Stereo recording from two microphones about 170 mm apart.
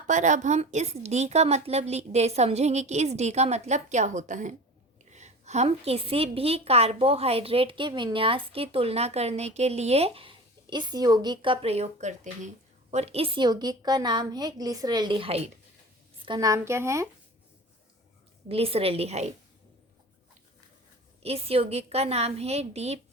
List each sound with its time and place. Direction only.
0.1 s a woman's voice: 45° right (ahead or behind); by 17.1 s 15° right (ahead or behind)
18.4 s a woman's voice: 35° right (ahead or behind)
21.2 s a woman's voice: 35° right (ahead or behind)